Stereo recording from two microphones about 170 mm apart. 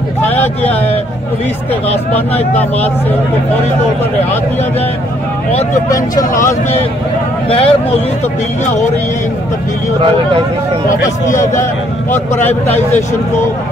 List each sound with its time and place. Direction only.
5.9 s speech: 20° left (ahead or behind)
7.4 s speech: 35° left (ahead or behind)
12.1 s speech: 10° left (ahead or behind)